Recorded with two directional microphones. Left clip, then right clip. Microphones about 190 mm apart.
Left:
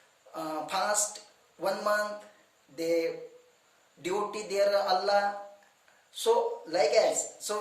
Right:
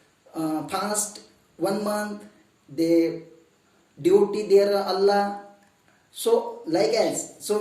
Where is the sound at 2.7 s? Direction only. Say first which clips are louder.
Right 7 dB; 15° left (ahead or behind).